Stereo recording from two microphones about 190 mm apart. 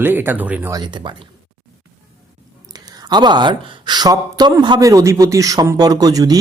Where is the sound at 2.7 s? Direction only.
20° right (ahead or behind).